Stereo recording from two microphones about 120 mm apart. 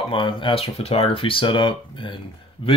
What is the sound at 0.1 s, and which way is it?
Speech, 45° left (ahead or behind).